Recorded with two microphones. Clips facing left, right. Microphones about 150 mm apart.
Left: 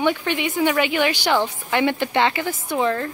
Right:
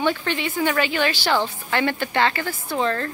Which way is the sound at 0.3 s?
15° left (ahead or behind).